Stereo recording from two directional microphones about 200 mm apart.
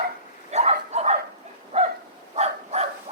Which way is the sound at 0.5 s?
35° right (ahead or behind).